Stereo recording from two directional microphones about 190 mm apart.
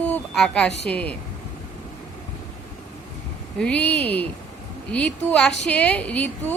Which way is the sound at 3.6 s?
5° left (ahead or behind).